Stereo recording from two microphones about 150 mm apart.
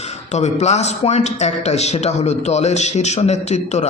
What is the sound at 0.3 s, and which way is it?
A man's voice, 50° left (ahead or behind).